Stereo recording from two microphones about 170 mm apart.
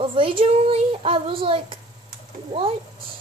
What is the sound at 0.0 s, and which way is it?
A child's voice, 30° right (ahead or behind).